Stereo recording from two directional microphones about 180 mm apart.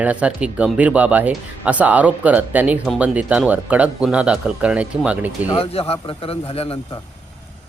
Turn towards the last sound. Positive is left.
turn(degrees=30)  # may be behind; listen again after turning